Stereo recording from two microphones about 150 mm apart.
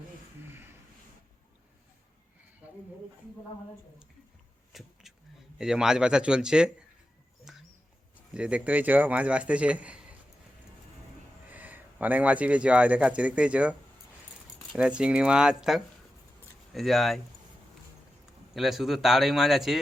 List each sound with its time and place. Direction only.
0.4 s a sound: 15° right (ahead or behind)
4.7 s a sound: centre (ahead or behind)
5.5 s a man's voice: 5° right (ahead or behind)
7.5 s bird: 5° right (ahead or behind)
8.3 s a man's voice: 10° right (ahead or behind)
11.4 s speech: 10° right (ahead or behind)
14.8 s a man's voice: 5° right (ahead or behind)
18.5 s a man's voice: centre (ahead or behind)